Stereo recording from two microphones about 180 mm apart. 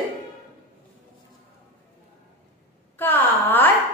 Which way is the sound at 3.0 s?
10° left (ahead or behind).